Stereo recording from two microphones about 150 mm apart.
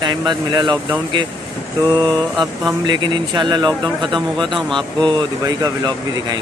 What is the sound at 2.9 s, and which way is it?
Speech, 30° right (ahead or behind).